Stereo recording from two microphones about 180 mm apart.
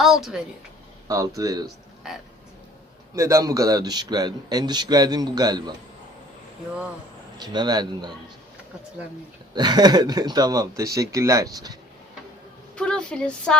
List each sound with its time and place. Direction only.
0.0 s a woman's voice: centre (ahead or behind)
1.0 s a man's voice: 20° right (ahead or behind)
2.0 s speech: 5° right (ahead or behind)
3.2 s a man's voice: 15° right (ahead or behind)
7.3 s a man's voice: 25° right (ahead or behind)
9.6 s a man's voice: 20° right (ahead or behind)
12.7 s speech: 5° left (ahead or behind)